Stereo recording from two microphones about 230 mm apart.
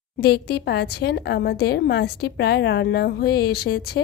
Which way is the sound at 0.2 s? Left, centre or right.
Left.